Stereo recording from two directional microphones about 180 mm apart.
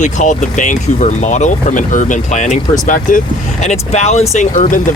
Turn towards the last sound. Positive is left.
turn(degrees=45)  # may be behind; listen again after turning